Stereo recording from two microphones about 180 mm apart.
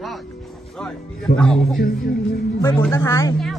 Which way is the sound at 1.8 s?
60° left (ahead or behind).